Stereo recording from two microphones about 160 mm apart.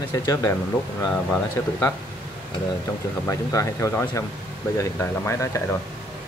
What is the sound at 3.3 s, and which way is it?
Speech, 20° left (ahead or behind).